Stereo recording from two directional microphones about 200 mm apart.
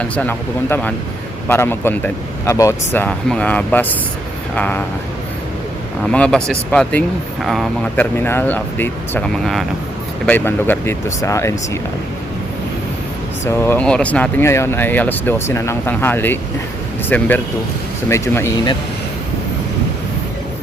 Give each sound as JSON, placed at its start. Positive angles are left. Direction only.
{"t": 0.0, "sound": "speech", "side_deg": 10}
{"t": 6.1, "sound": "speech", "side_deg": 5}
{"t": 13.4, "sound": "speech", "side_deg": 10}